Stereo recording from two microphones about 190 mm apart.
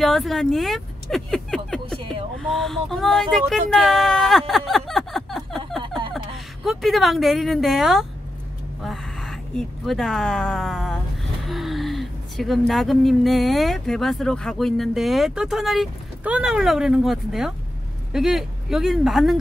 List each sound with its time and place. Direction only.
0.0 s vehicle: centre (ahead or behind)
2.4 s a woman's voice: centre (ahead or behind)